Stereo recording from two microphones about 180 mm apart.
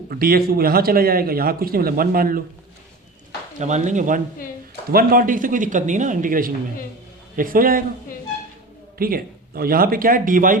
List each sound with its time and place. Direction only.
0.1 s speech: 55° right (ahead or behind)
3.6 s a man's voice: 40° right (ahead or behind)
9.0 s a man's voice: 55° right (ahead or behind)